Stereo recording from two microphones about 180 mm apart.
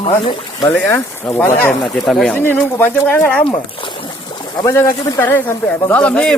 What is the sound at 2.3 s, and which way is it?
Speech, 10° left (ahead or behind).